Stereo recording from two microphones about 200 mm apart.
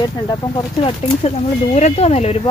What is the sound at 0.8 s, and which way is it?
Speech, 30° left (ahead or behind).